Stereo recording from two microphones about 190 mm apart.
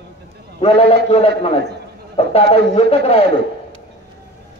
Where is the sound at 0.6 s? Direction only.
30° left (ahead or behind).